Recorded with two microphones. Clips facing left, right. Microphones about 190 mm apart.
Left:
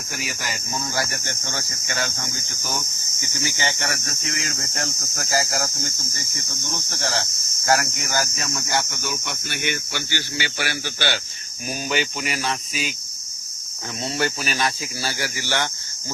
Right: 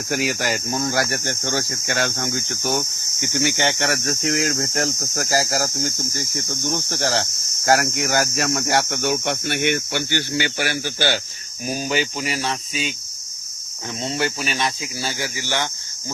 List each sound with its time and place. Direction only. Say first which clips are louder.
0.1 s speech: right 10 dB; 65° right (ahead or behind)
7.9 s speech: right 6 dB; 65° right (ahead or behind); by 12.9 s 30° right (ahead or behind)
14.0 s speech: right 1 dB; 25° right (ahead or behind)